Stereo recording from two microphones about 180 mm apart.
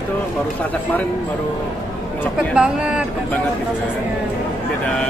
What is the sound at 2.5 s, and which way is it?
Speech, 5° right (ahead or behind).